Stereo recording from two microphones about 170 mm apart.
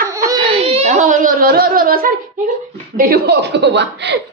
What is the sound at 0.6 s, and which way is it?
Speech, 35° right (ahead or behind).